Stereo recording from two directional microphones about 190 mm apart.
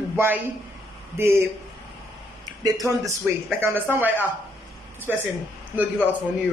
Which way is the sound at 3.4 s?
10° right (ahead or behind).